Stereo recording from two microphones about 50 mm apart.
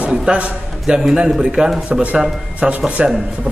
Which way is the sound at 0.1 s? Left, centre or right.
Centre.